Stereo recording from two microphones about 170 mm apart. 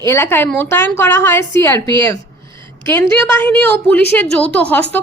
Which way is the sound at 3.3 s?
10° left (ahead or behind).